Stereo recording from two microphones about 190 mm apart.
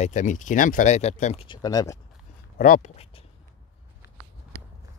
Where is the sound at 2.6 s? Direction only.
40° left (ahead or behind).